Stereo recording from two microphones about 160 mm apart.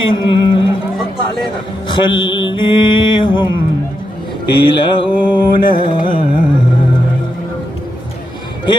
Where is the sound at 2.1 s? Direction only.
30° left (ahead or behind).